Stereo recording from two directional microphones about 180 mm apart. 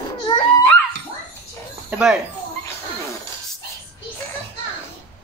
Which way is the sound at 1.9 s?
5° right (ahead or behind).